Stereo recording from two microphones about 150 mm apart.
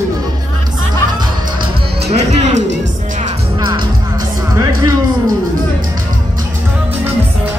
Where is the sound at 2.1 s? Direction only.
45° right (ahead or behind).